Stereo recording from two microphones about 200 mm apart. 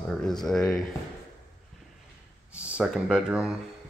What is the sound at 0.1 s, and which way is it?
Speech, centre (ahead or behind).